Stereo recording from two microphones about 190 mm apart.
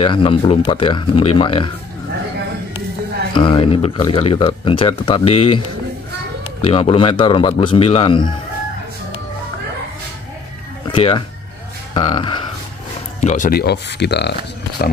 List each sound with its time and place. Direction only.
0.0 s speech: 25° left (ahead or behind)
3.3 s speech: 25° left (ahead or behind)
6.6 s speech: 30° left (ahead or behind)
10.9 s speech: 25° left (ahead or behind)
13.2 s speech: 40° left (ahead or behind)
13.5 s speech: 60° left (ahead or behind)